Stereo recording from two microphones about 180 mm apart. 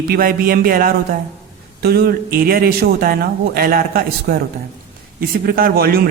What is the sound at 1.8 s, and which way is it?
Speech, 60° right (ahead or behind).